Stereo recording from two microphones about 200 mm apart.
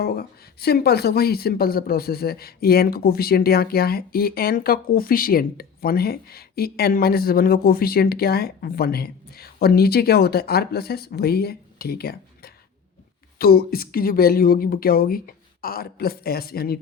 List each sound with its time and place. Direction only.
0.0 s speech: 50° left (ahead or behind)